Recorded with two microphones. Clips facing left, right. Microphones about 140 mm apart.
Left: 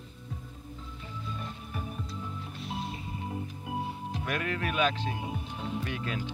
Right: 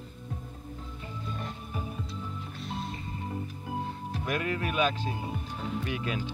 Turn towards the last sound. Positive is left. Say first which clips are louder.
# right 2 dB
turn(degrees=-15)  # may be behind; listen again after turning